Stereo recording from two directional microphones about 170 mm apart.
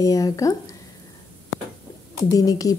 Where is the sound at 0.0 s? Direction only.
20° left (ahead or behind).